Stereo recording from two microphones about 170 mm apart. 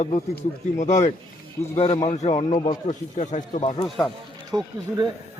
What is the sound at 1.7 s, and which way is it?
Speech, 30° left (ahead or behind).